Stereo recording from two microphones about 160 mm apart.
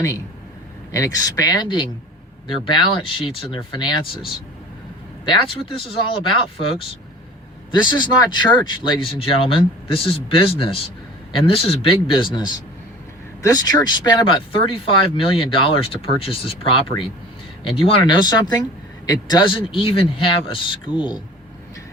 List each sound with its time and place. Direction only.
0.9 s speech: 25° left (ahead or behind)